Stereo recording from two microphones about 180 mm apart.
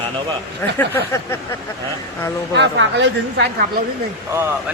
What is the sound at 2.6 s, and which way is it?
A woman's voice, 80° right.